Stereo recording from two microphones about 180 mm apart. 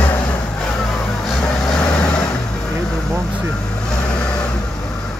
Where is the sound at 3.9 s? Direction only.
5° left (ahead or behind).